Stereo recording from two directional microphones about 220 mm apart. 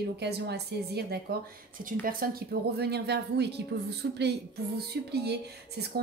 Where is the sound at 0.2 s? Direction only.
50° right (ahead or behind).